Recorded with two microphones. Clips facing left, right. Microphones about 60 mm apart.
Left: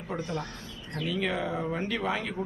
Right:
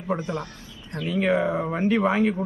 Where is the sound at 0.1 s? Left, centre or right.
Right.